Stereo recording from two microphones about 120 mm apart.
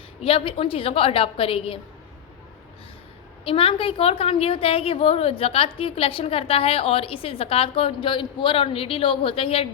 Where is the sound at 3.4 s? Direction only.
50° left (ahead or behind).